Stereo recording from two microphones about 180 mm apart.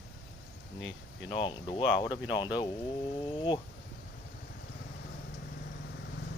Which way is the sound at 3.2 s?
25° left (ahead or behind).